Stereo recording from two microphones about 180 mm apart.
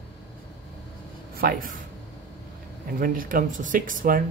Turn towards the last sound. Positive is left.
turn(degrees=-50)  # may be behind; listen again after turning